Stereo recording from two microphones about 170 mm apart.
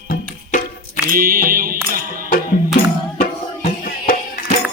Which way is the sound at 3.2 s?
60° left (ahead or behind).